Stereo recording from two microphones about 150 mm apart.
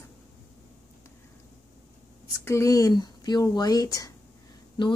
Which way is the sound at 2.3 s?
20° left (ahead or behind).